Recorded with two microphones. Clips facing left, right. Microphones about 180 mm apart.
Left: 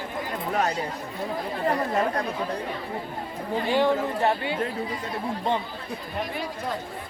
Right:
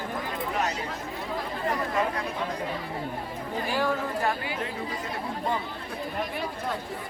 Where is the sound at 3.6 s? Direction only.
25° left (ahead or behind).